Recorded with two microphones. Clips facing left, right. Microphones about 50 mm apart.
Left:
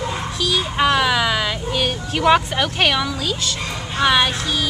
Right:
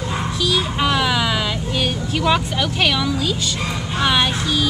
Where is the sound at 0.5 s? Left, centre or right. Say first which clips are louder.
Left 2 dB; centre.